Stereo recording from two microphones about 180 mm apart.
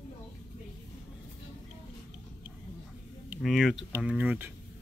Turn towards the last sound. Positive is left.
turn(degrees=-10)  # may be behind; listen again after turning